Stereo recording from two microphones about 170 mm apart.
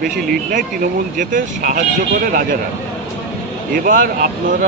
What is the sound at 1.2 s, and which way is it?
Speech, 50° right (ahead or behind).